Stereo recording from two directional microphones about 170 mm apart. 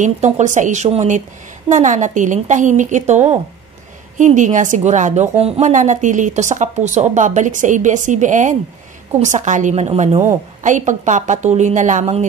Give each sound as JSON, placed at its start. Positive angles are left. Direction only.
{"t": 0.0, "sound": "a woman's voice", "side_deg": -45}